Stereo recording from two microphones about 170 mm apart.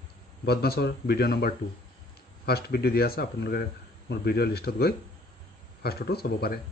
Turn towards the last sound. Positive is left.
turn(degrees=65)  # may be behind; listen again after turning